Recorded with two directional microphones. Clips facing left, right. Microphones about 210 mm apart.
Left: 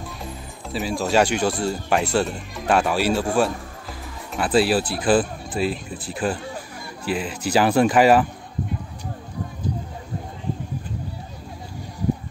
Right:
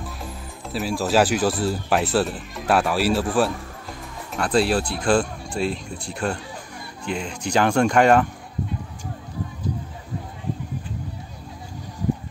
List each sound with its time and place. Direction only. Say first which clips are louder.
0.2 s speech: even; centre (ahead or behind)